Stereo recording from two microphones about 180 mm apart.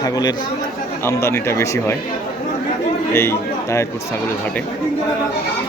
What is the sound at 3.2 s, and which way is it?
Speech, 15° left (ahead or behind).